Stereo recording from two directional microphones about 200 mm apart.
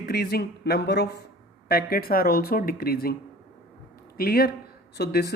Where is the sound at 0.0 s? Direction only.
50° left (ahead or behind).